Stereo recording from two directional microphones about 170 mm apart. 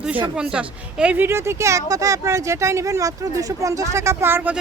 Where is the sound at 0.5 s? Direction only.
5° right (ahead or behind).